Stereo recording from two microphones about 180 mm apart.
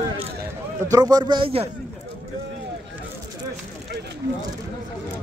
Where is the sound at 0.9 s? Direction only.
20° right (ahead or behind).